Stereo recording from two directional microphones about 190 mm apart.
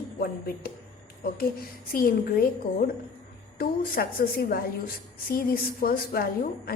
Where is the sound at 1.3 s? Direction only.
50° left (ahead or behind).